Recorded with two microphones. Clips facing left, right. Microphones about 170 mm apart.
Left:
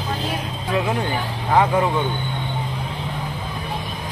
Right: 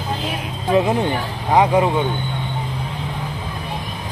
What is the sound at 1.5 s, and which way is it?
Speech, 15° right (ahead or behind).